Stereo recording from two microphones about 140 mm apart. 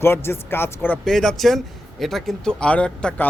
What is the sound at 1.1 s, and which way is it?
A man's voice, centre (ahead or behind).